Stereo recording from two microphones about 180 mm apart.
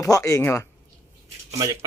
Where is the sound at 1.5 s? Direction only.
20° right (ahead or behind).